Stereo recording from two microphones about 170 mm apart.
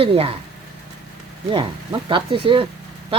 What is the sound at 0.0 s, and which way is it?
Speech, 35° right (ahead or behind).